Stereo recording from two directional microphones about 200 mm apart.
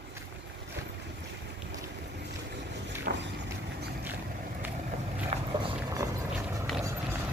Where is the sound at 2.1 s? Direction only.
60° right (ahead or behind).